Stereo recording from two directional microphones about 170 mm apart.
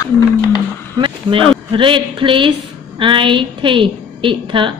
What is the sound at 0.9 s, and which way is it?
A woman's voice, 30° right (ahead or behind).